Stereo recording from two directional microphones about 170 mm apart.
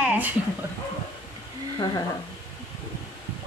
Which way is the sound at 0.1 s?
10° right (ahead or behind).